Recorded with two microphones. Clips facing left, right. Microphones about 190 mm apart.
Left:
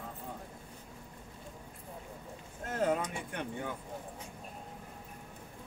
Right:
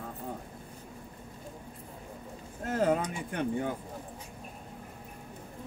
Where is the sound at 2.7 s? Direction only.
35° right (ahead or behind).